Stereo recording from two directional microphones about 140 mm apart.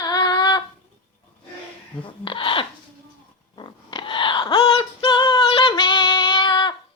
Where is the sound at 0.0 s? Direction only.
30° left (ahead or behind).